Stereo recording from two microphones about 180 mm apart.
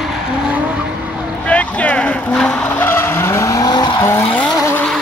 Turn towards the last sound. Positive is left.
turn(degrees=10)  # may be behind; listen again after turning